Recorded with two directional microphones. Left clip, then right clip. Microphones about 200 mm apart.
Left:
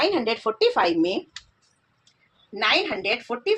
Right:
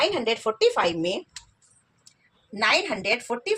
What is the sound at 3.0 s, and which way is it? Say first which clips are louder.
Speech: even; 25° left (ahead or behind).